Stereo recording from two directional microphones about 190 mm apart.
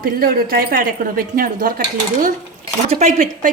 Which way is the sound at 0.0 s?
50° right (ahead or behind).